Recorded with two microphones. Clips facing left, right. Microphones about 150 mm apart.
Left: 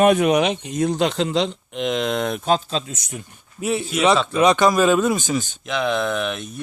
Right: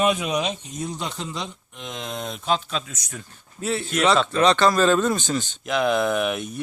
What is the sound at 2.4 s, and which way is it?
Speech, 45° left (ahead or behind).